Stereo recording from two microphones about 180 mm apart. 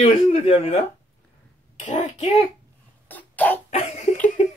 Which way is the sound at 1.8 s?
45° left (ahead or behind).